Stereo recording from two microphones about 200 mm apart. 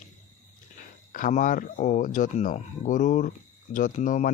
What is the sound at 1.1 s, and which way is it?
Speech, 40° left (ahead or behind).